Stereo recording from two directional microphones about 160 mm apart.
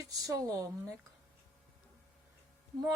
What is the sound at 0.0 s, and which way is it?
Speech, 20° right (ahead or behind).